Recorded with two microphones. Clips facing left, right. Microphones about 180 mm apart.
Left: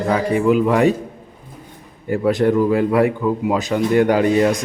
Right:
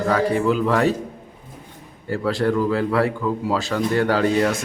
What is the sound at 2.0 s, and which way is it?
Speech, 20° left (ahead or behind).